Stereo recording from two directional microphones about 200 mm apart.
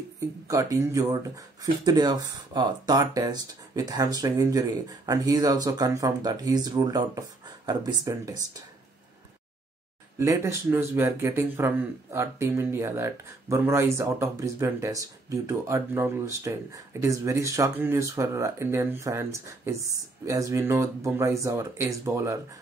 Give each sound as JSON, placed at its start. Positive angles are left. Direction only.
{"t": 0.5, "sound": "speech", "side_deg": -15}
{"t": 10.1, "sound": "speech", "side_deg": -15}